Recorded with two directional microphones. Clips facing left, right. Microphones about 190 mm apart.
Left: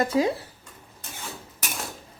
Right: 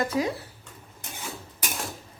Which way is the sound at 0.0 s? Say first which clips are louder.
Left 4 dB; 25° left (ahead or behind).